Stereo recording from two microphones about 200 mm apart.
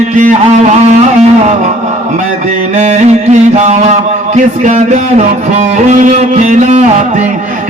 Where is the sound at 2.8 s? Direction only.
35° right (ahead or behind).